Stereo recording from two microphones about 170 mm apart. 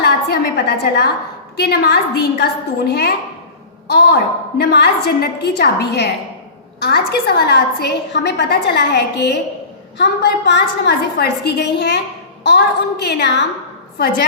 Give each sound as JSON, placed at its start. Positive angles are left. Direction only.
{"t": 0.0, "sound": "a woman's voice", "side_deg": 70}